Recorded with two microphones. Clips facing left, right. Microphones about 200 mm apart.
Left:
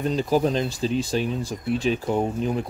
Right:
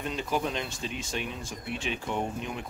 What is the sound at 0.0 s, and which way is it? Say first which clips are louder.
Speech: left 9 dB; 35° left (ahead or behind).